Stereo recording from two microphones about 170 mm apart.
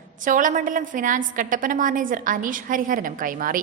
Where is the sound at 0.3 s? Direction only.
50° right (ahead or behind).